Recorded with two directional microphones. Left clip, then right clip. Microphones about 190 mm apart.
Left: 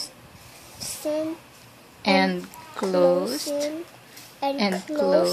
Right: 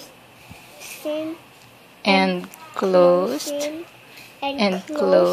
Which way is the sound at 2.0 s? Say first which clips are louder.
Right 3 dB; 10° right (ahead or behind).